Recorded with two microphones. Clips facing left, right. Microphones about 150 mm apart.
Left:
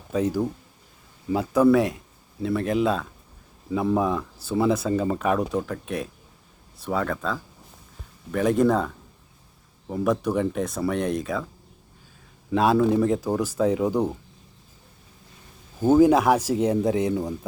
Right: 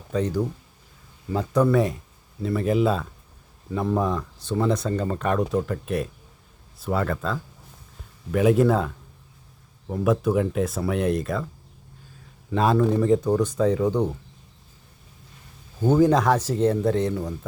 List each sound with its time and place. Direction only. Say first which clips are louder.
0.1 s speech: left 1 dB; 5° left (ahead or behind)
9.9 s speech: right 2 dB; centre (ahead or behind)
12.5 s speech: left 1 dB; centre (ahead or behind)
15.8 s speech: left 2 dB; 10° left (ahead or behind)